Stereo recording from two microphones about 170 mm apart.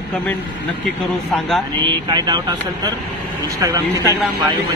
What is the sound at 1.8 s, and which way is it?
Speech, 25° right (ahead or behind).